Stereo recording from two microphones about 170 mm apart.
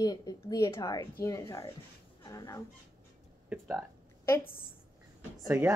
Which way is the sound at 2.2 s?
20° left (ahead or behind).